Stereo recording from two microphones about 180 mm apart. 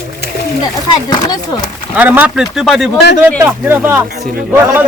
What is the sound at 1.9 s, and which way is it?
Speech, 10° right (ahead or behind).